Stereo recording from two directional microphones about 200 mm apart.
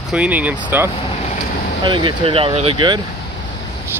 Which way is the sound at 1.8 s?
25° right (ahead or behind).